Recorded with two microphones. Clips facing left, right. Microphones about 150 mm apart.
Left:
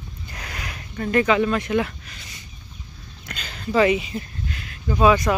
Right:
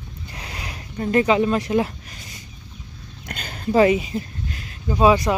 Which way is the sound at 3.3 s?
50° right (ahead or behind).